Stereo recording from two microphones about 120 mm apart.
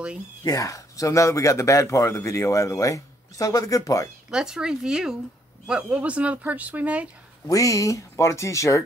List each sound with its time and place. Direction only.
0.4 s speech: 30° left (ahead or behind)
4.3 s speech: 5° right (ahead or behind)
7.4 s speech: 30° left (ahead or behind)